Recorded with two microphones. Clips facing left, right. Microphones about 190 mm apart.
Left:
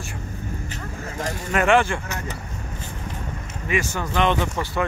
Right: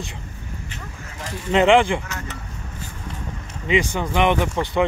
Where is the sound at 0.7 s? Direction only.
45° left (ahead or behind).